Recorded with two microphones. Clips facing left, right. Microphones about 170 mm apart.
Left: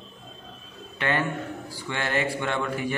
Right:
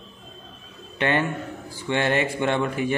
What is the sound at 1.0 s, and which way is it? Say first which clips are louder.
A man's voice: right 3 dB; 20° right (ahead or behind).